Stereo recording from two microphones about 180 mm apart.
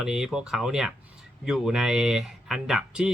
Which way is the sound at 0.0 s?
Centre (ahead or behind).